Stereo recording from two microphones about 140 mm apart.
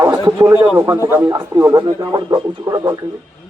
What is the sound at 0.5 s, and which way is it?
A man's voice, 10° right (ahead or behind).